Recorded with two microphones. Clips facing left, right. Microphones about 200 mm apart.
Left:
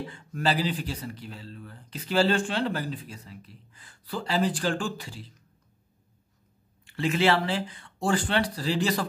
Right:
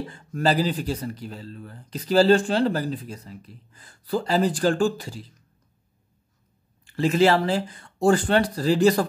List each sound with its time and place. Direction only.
0.0 s speech: 40° right (ahead or behind)
6.8 s speech: 40° right (ahead or behind)